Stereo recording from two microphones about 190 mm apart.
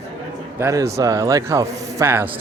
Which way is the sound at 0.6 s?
15° right (ahead or behind).